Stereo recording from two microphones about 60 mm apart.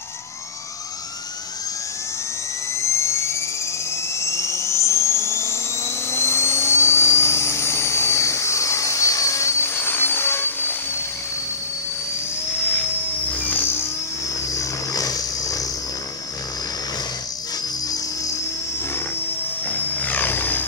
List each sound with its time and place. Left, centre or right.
2.8 s dental drill: left
4.2 s a sound: left
6.0 s dental drill: left
9.6 s helicopter: left
13.4 s a sound: left
14.5 s vehicle: left
19.7 s vehicle: left